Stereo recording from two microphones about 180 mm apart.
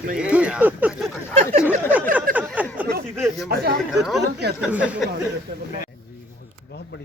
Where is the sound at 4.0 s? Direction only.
Centre (ahead or behind).